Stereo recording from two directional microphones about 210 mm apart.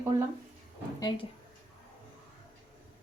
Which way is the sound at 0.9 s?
20° left (ahead or behind).